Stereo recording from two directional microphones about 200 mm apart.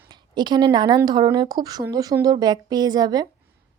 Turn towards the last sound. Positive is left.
turn(degrees=-20)  # may be behind; listen again after turning